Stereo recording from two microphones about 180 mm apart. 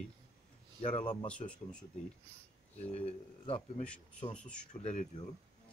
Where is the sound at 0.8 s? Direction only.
40° left (ahead or behind).